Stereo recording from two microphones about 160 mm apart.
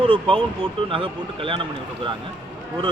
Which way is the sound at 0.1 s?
35° right (ahead or behind).